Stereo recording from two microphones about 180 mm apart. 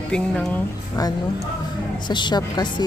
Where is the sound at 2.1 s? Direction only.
25° left (ahead or behind).